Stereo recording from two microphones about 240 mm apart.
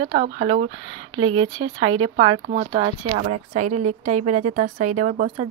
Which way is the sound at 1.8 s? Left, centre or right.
Right.